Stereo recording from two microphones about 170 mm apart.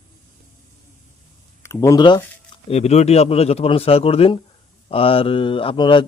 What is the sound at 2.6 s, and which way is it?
A man's voice, 40° left (ahead or behind).